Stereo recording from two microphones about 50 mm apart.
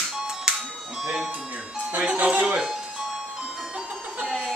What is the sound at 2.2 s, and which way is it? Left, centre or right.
Speech, right.